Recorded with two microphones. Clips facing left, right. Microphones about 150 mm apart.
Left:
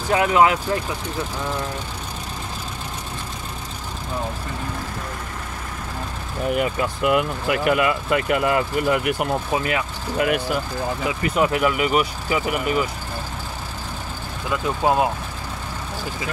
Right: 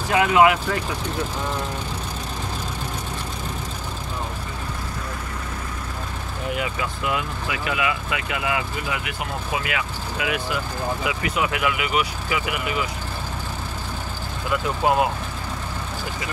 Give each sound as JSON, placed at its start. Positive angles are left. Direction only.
{"t": 0.1, "sound": "speech", "side_deg": 35}
{"t": 6.5, "sound": "speech", "side_deg": 50}
{"t": 9.5, "sound": "speech", "side_deg": 35}
{"t": 14.8, "sound": "speech", "side_deg": 25}